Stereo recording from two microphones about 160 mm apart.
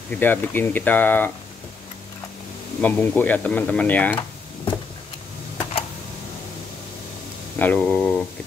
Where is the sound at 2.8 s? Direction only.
10° left (ahead or behind).